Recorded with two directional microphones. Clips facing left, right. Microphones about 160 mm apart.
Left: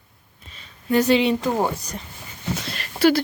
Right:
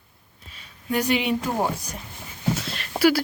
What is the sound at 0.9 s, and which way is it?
Speech, 10° right (ahead or behind).